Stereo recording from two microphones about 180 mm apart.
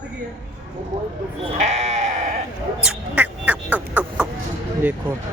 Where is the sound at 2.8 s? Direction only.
5° right (ahead or behind).